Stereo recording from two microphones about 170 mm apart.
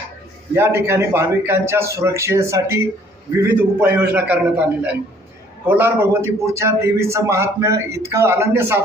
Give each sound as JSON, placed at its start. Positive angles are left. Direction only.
{"t": 0.5, "sound": "a man's voice", "side_deg": -15}